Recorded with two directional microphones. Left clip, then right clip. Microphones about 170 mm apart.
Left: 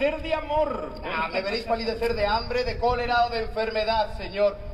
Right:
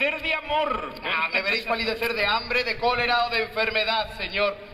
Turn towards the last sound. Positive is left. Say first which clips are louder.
# left 1 dB
turn(degrees=45)  # may be behind; listen again after turning